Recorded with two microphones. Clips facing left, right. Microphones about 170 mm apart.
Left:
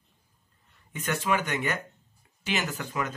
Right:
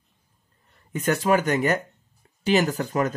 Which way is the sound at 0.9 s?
40° right (ahead or behind).